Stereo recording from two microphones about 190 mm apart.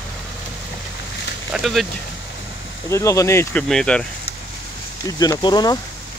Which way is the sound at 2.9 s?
15° left (ahead or behind).